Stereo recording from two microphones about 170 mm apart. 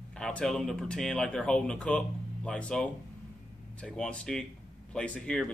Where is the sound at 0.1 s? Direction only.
5° left (ahead or behind).